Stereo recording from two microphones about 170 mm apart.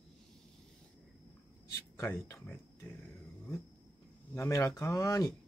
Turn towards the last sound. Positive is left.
turn(degrees=20)  # may be behind; listen again after turning